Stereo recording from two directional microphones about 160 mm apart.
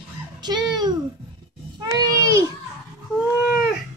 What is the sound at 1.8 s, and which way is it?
Babbling, 25° right (ahead or behind).